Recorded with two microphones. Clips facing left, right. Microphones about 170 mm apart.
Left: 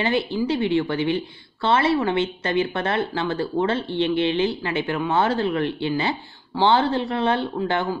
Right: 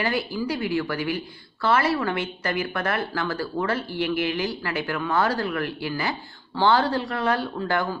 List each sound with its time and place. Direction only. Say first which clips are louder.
0.0 s speech: left 4 dB; 25° left (ahead or behind)